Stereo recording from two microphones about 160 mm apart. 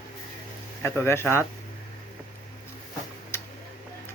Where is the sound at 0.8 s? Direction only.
15° left (ahead or behind).